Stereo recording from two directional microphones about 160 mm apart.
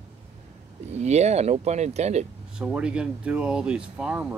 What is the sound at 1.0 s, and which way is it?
Speech, 45° right (ahead or behind).